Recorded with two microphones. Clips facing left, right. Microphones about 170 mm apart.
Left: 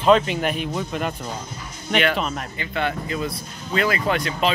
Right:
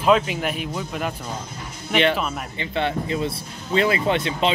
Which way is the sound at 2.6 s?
25° right (ahead or behind).